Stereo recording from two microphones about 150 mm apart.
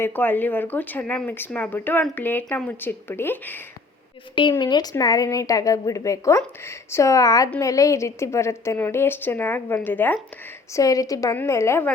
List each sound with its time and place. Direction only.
0.0 s speech: 15° left (ahead or behind)
4.6 s a woman's voice: 30° left (ahead or behind)